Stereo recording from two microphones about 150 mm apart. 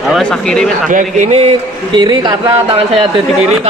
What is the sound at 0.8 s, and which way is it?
Speech, 60° right (ahead or behind).